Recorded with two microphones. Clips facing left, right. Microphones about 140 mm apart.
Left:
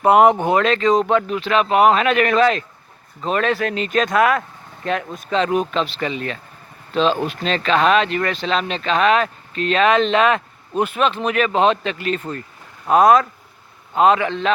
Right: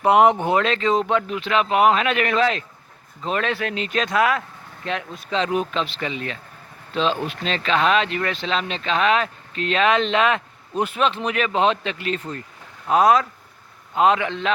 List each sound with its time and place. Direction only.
0.0 s speech: 45° left (ahead or behind)
10.8 s a man's voice: 55° left (ahead or behind); by 14.5 s 40° left (ahead or behind)